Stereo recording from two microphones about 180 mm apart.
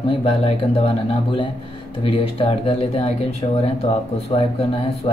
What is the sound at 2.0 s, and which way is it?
Speech, 30° left (ahead or behind).